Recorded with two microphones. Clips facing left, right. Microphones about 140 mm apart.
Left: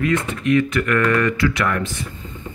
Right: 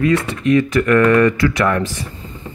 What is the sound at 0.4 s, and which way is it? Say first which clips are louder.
Speech: right 2 dB; 35° right (ahead or behind).